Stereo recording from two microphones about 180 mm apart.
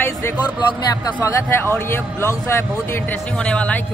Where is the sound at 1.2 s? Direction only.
15° left (ahead or behind).